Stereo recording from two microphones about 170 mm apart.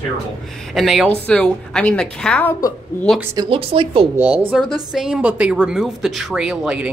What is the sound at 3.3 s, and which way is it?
Speech, 30° right (ahead or behind).